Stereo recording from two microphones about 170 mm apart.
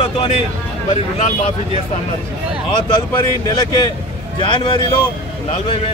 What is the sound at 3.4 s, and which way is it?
A man's voice, 25° left (ahead or behind).